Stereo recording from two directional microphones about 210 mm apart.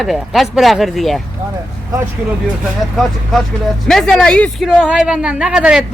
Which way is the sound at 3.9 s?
Centre (ahead or behind).